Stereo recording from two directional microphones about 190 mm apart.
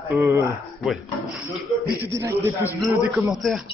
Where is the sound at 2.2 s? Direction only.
15° right (ahead or behind).